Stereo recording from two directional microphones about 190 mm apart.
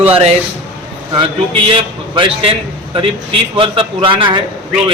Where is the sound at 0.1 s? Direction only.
30° right (ahead or behind).